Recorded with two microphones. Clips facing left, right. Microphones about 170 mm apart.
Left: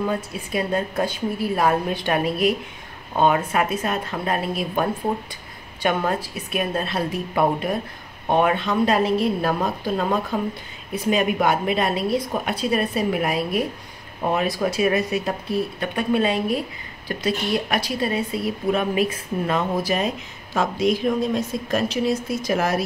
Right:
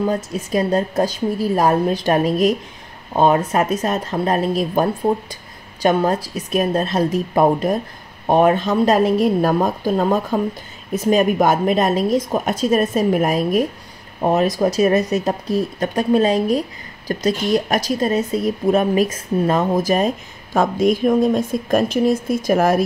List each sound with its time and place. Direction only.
0.0 s a woman's voice: 40° right (ahead or behind)